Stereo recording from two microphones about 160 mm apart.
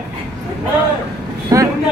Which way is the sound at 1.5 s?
20° right (ahead or behind).